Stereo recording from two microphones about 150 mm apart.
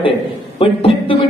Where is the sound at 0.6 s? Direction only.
40° left (ahead or behind).